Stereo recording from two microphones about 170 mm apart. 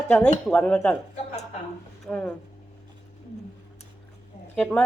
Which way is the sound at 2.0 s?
5° left (ahead or behind).